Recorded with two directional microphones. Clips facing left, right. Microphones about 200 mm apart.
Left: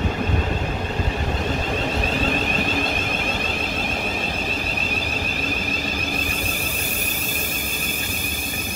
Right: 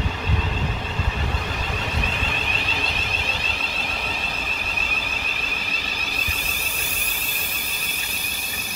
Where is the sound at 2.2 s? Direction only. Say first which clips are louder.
Left 8 dB; 45° left (ahead or behind).